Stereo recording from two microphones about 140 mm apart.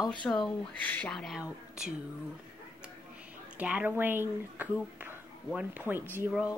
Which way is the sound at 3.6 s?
10° right (ahead or behind).